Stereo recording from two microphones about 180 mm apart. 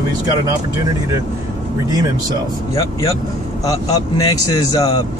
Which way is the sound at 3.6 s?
20° left (ahead or behind).